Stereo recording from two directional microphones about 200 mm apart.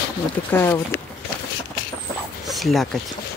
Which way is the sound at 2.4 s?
Centre (ahead or behind).